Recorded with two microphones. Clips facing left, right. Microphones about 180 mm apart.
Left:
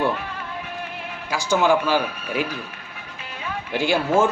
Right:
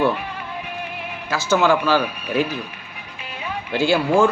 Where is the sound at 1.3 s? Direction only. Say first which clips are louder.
Right 1 dB; 15° left (ahead or behind).